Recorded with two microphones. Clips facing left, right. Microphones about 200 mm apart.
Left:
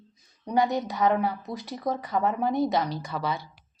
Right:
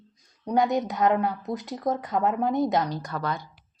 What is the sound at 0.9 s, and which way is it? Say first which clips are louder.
Speech: right 1 dB; centre (ahead or behind).